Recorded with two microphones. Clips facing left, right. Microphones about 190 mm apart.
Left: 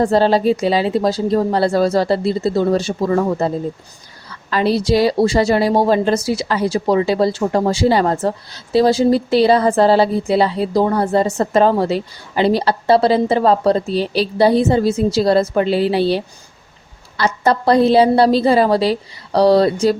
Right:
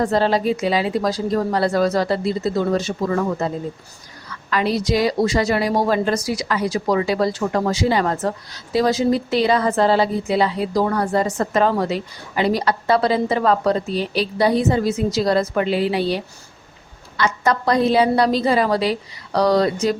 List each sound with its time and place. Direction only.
0.0 s a woman's voice: 30° left (ahead or behind)